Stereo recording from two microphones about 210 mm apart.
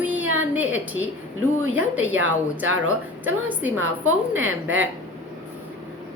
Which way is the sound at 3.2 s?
10° right (ahead or behind).